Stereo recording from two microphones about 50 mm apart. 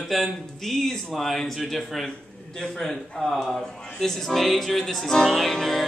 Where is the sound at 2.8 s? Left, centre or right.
Centre.